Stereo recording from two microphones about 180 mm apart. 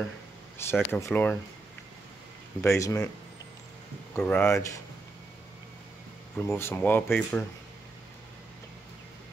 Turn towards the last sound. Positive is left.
turn(degrees=10)  # may be behind; listen again after turning